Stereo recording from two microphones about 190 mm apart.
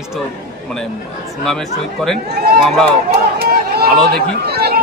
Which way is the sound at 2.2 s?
55° right (ahead or behind).